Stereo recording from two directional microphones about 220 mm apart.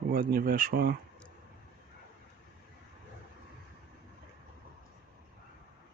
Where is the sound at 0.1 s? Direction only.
40° right (ahead or behind).